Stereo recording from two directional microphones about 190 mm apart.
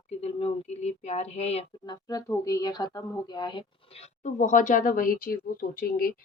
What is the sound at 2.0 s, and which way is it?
Speech, 20° left (ahead or behind).